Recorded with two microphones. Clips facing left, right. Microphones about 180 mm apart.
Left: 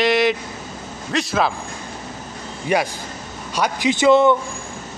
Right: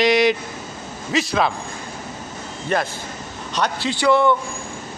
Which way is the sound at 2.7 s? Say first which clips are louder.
Left 2 dB; 10° left (ahead or behind).